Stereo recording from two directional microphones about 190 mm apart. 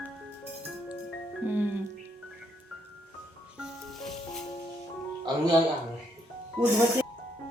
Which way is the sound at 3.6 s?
Centre (ahead or behind).